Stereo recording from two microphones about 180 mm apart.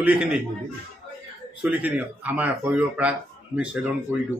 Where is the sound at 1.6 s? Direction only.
10° right (ahead or behind).